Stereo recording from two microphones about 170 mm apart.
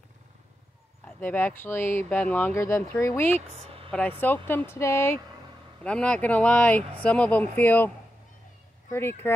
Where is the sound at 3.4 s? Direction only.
35° right (ahead or behind).